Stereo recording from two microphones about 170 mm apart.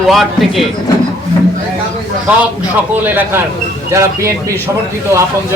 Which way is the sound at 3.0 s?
10° right (ahead or behind).